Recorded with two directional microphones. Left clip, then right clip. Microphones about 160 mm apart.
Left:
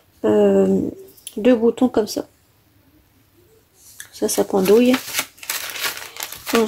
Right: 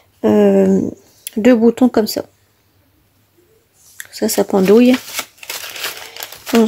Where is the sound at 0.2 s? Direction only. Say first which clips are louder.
Right 3 dB; 45° right (ahead or behind).